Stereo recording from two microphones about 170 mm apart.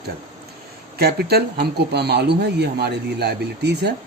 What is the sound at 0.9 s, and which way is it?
A man's voice, 70° right (ahead or behind).